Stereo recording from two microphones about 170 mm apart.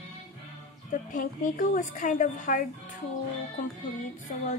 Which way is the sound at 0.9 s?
55° left (ahead or behind).